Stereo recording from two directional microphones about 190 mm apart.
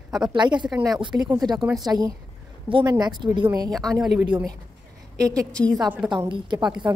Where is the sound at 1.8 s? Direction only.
20° right (ahead or behind).